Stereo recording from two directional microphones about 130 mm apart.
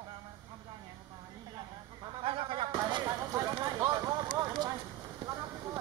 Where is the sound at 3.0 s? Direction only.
25° right (ahead or behind).